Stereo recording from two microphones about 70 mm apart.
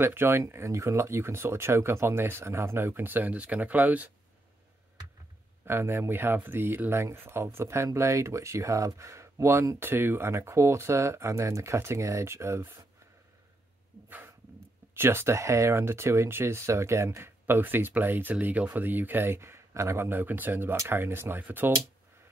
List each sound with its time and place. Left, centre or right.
0.0 s speech: right
5.7 s speech: right
14.0 s a sound: right
15.0 s speech: right
20.1 s speech: right
20.7 s speech: right